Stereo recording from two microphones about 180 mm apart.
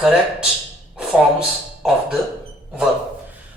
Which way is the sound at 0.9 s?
5° right (ahead or behind).